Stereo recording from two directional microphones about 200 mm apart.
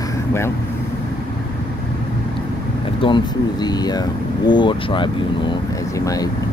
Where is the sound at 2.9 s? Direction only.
25° left (ahead or behind).